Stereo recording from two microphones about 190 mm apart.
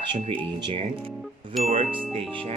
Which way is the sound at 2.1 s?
30° right (ahead or behind).